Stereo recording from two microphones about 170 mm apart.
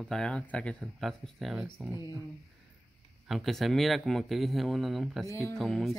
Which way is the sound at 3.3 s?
Centre (ahead or behind).